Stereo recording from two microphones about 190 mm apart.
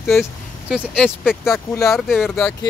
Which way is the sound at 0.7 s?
Centre (ahead or behind).